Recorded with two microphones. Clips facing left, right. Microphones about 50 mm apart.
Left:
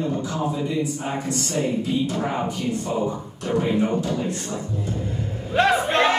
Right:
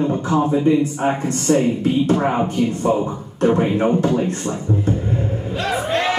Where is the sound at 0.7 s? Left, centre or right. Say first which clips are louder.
Right 9 dB; right.